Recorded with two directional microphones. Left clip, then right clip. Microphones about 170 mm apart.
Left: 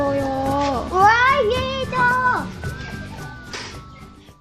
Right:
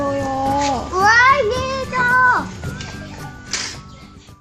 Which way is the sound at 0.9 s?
25° left (ahead or behind).